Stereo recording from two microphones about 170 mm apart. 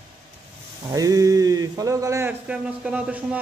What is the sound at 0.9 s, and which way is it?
Speech, 20° right (ahead or behind).